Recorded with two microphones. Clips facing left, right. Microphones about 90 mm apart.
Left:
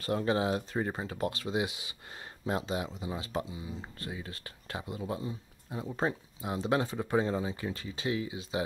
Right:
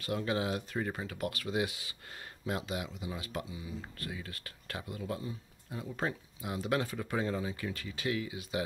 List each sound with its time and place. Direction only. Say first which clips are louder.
0.0 s speech: left 4 dB; 35° left (ahead or behind)